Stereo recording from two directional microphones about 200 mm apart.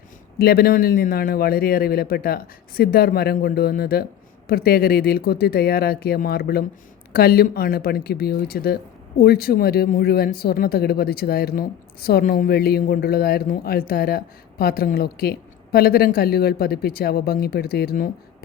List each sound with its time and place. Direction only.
0.3 s speech: 50° left (ahead or behind)